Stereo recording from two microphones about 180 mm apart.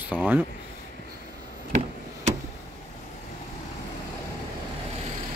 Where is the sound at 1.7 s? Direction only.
40° right (ahead or behind).